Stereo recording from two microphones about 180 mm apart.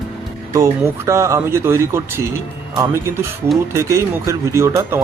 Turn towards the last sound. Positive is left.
turn(degrees=-15)  # may be behind; listen again after turning